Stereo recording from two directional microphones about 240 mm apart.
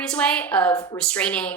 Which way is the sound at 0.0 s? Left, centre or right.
Centre.